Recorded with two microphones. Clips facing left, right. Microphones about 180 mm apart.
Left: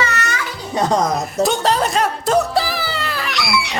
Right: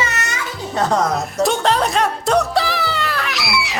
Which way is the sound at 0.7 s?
15° left (ahead or behind).